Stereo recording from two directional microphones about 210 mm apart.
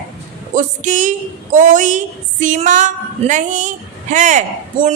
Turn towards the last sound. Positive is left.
turn(degrees=-35)  # may be behind; listen again after turning